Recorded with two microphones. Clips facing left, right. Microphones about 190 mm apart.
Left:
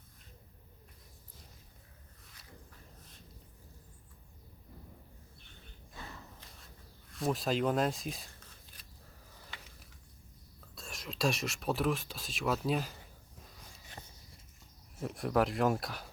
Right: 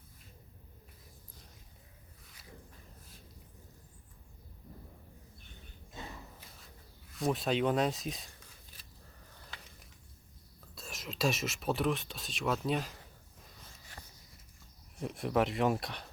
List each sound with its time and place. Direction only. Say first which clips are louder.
6.0 s a sound: right 3 dB; 20° right (ahead or behind)
7.1 s speech: right 1 dB; centre (ahead or behind)
10.8 s speech: even; centre (ahead or behind)
14.9 s speech: even; centre (ahead or behind)